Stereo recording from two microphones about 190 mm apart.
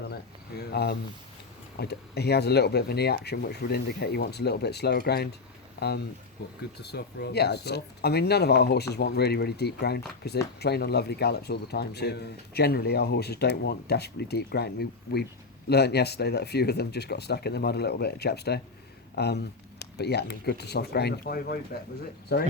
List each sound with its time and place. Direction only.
0.1 s speech: 60° left (ahead or behind)
6.4 s speech: 65° left (ahead or behind)